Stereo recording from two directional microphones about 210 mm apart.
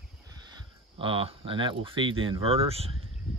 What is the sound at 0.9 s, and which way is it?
Speech, 25° right (ahead or behind).